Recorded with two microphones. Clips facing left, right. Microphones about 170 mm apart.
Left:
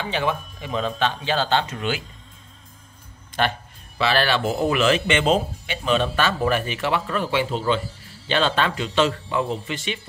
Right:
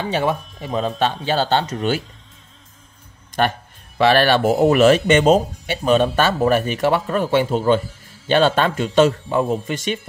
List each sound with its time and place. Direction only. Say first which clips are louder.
0.0 s speech: right 4 dB; 40° right (ahead or behind)
4.0 s speech: right 6 dB; 50° right (ahead or behind)